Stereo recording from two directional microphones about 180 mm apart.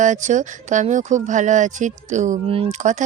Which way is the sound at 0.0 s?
45° right (ahead or behind).